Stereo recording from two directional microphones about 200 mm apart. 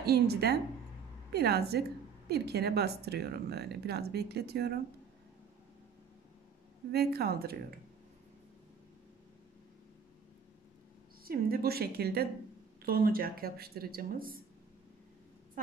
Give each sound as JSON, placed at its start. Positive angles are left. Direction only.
{"t": 0.0, "sound": "a woman's voice", "side_deg": -55}
{"t": 6.9, "sound": "a woman's voice", "side_deg": -55}
{"t": 11.2, "sound": "a woman's voice", "side_deg": -50}